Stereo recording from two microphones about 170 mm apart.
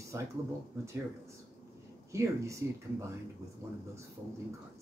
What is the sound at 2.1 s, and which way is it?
Speech, 15° right (ahead or behind).